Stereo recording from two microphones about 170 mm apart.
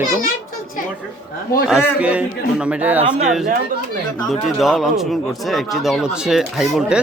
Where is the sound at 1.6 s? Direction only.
5° right (ahead or behind).